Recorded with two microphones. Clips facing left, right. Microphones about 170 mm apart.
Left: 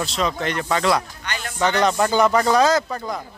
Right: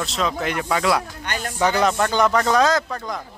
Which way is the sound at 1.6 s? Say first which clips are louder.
Even; 5° right (ahead or behind).